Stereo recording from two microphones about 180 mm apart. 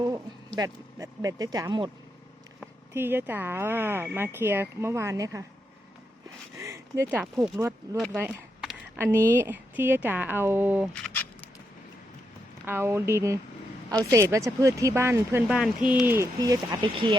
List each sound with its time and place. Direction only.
0.0 s speech: 20° right (ahead or behind)
2.9 s speech: 10° right (ahead or behind)
6.6 s a sound: 15° right (ahead or behind)
8.1 s speech: 10° right (ahead or behind)
10.9 s a sound: 10° left (ahead or behind)
12.6 s speech: 10° right (ahead or behind)